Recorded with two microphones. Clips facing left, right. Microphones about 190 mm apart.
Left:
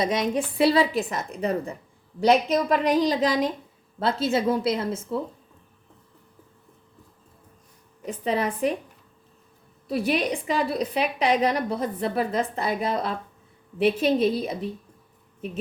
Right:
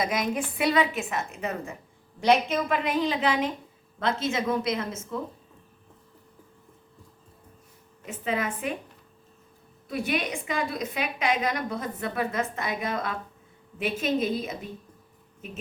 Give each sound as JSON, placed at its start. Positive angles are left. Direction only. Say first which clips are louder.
{"t": 0.0, "sound": "a woman's voice", "louder": "left 3 dB", "side_deg": 30}
{"t": 8.0, "sound": "a woman's voice", "louder": "left 4 dB", "side_deg": 35}
{"t": 9.9, "sound": "a woman's voice", "louder": "left 5 dB", "side_deg": 35}